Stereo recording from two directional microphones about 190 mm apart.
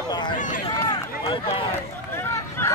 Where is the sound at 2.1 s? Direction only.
10° left (ahead or behind).